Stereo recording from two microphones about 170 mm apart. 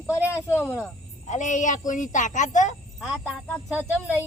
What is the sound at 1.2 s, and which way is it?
Speech, 45° left (ahead or behind).